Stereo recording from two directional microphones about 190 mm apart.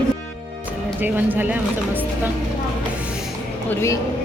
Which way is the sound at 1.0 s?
10° right (ahead or behind).